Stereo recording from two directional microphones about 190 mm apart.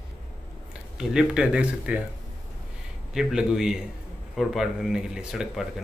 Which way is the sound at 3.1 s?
Centre (ahead or behind).